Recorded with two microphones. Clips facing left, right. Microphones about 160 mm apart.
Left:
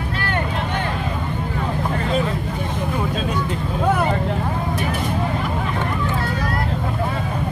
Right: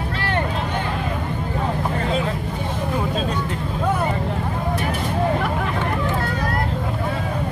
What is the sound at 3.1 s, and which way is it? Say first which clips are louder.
Vehicle: even; centre (ahead or behind).